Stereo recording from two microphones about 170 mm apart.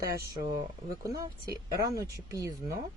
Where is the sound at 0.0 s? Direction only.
20° right (ahead or behind).